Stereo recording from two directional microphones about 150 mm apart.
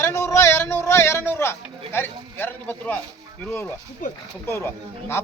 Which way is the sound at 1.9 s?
15° left (ahead or behind).